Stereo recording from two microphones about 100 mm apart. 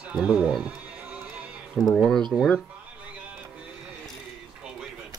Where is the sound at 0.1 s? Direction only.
10° right (ahead or behind).